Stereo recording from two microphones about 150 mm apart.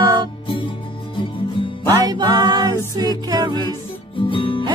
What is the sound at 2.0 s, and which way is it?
Music, 25° right (ahead or behind).